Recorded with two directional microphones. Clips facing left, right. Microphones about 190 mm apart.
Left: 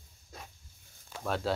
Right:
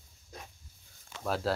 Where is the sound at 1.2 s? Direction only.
Centre (ahead or behind).